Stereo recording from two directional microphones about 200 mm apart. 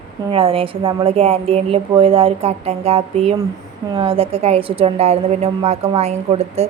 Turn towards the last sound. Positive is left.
turn(degrees=-30)  # may be behind; listen again after turning